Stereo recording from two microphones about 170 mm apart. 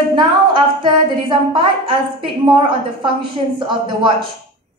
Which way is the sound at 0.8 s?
30° right (ahead or behind).